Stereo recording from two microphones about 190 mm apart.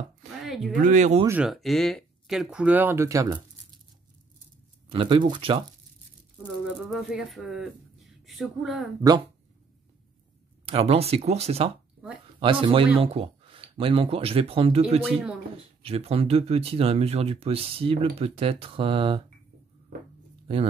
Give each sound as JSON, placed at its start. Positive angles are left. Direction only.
{"t": 0.4, "sound": "a sound", "side_deg": 0}
{"t": 0.8, "sound": "speech", "side_deg": -40}
{"t": 1.2, "sound": "speech", "side_deg": -5}
{"t": 4.8, "sound": "speech", "side_deg": -25}
{"t": 6.9, "sound": "speech", "side_deg": 0}
{"t": 10.6, "sound": "speech", "side_deg": -30}